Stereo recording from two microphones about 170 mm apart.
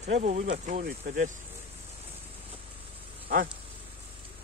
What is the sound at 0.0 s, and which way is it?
Speech, 40° right (ahead or behind).